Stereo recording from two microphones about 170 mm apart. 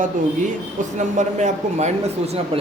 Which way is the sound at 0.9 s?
45° right (ahead or behind).